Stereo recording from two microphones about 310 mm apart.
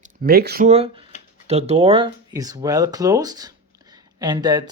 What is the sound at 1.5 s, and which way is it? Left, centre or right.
Speech, right.